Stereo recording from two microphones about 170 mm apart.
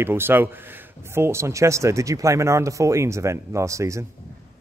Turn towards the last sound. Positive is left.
turn(degrees=-15)  # may be behind; listen again after turning